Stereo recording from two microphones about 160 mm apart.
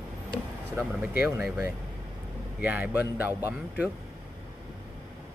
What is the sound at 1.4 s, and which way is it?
Speech, 15° right (ahead or behind).